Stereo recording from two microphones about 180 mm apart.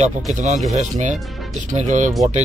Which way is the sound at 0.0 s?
40° right (ahead or behind).